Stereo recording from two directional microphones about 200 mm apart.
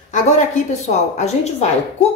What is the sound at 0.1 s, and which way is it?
A woman's voice, 35° left (ahead or behind).